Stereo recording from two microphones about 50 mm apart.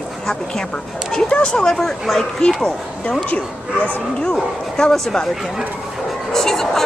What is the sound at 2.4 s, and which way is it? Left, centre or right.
Speech, centre.